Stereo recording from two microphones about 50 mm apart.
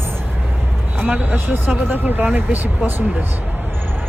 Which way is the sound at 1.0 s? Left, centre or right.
Right.